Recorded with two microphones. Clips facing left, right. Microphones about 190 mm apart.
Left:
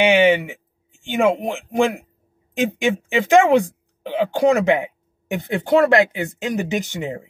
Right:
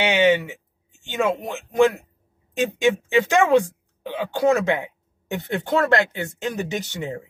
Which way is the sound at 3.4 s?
15° left (ahead or behind).